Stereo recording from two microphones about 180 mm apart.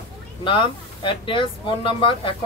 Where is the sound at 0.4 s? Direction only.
25° left (ahead or behind).